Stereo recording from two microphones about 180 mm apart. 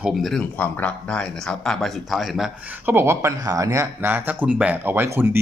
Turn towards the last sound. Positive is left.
turn(degrees=-10)  # may be behind; listen again after turning